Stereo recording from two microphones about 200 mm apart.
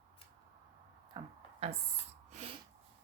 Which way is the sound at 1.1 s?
30° right (ahead or behind).